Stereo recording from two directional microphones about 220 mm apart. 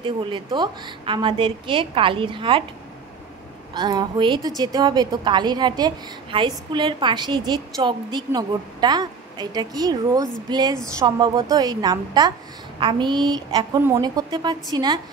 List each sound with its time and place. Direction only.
0.0 s a woman's voice: 20° right (ahead or behind)
3.7 s a woman's voice: 20° right (ahead or behind)